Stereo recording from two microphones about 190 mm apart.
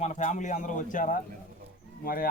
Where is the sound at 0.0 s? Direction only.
40° left (ahead or behind).